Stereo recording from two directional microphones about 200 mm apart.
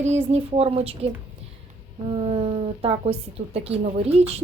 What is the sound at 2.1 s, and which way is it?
A woman's voice, 30° right (ahead or behind).